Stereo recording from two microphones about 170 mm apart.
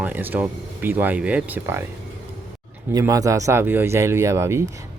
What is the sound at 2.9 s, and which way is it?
Speech, 20° right (ahead or behind).